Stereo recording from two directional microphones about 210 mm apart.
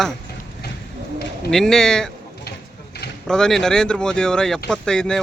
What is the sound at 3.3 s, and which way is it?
Speech, 5° left (ahead or behind).